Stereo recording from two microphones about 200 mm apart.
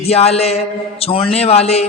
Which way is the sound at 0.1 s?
30° left (ahead or behind).